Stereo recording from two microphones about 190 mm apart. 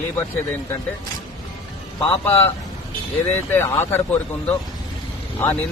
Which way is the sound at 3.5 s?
10° left (ahead or behind).